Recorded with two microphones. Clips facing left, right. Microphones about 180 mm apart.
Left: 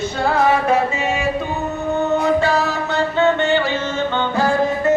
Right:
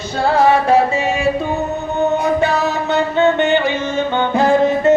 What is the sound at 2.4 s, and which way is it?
Music, 20° right (ahead or behind).